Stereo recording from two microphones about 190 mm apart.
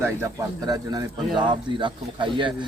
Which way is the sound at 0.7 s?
20° right (ahead or behind).